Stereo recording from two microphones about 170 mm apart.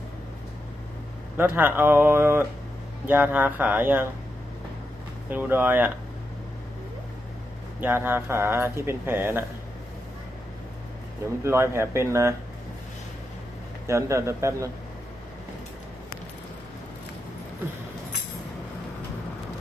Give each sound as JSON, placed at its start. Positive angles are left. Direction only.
{"t": 1.4, "sound": "speech", "side_deg": -10}
{"t": 5.3, "sound": "speech", "side_deg": -10}
{"t": 7.8, "sound": "speech", "side_deg": -10}
{"t": 11.4, "sound": "speech", "side_deg": -15}
{"t": 13.8, "sound": "speech", "side_deg": -15}